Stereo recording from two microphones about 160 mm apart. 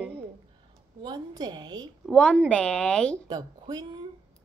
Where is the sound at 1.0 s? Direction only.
25° right (ahead or behind).